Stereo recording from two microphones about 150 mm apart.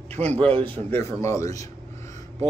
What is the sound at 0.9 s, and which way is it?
Speech, 20° left (ahead or behind).